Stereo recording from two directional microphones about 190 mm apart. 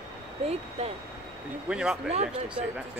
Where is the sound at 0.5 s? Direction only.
35° right (ahead or behind).